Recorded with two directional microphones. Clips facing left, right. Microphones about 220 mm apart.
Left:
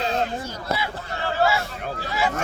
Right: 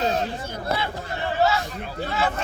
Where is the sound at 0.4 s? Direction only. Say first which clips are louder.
Right 2 dB; 55° right (ahead or behind).